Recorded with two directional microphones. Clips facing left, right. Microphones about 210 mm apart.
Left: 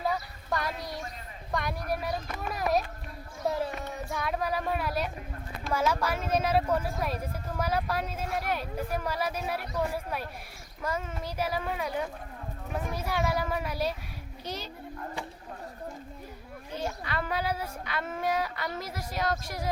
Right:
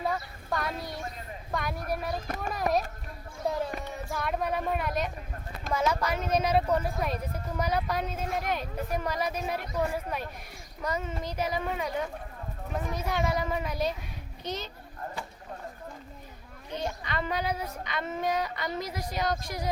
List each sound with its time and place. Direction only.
0.0 s a sound: centre (ahead or behind)
1.5 s speech: centre (ahead or behind)
2.2 s speech: 45° right (ahead or behind)
2.5 s a sound: centre (ahead or behind)
5.7 s speech: 5° left (ahead or behind)
16.7 s speech: 5° left (ahead or behind)